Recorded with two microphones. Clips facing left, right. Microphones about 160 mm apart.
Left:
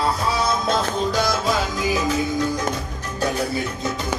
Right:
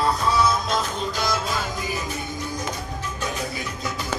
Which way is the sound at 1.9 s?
90° left.